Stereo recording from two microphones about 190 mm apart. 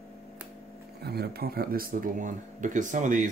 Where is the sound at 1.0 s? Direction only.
55° right (ahead or behind).